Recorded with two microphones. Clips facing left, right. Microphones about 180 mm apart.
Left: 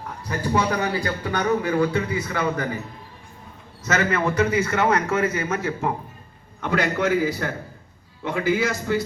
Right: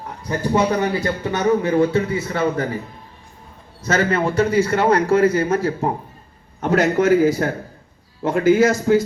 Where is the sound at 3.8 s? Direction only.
30° right (ahead or behind).